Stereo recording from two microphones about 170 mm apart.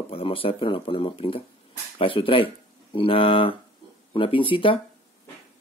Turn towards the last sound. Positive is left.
turn(degrees=30)  # may be behind; listen again after turning